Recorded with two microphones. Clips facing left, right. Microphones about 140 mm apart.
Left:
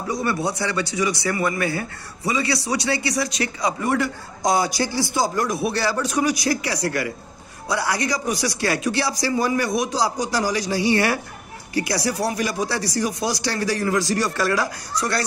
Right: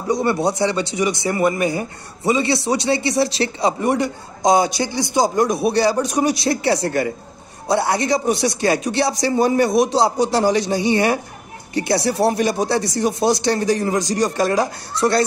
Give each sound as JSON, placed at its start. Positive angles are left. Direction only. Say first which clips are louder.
{"t": 0.1, "sound": "speech", "louder": "right 6 dB", "side_deg": -25}